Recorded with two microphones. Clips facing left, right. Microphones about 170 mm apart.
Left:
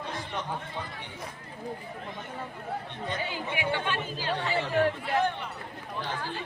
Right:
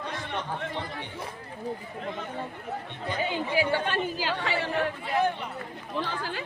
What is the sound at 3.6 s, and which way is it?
Speech, 40° right (ahead or behind).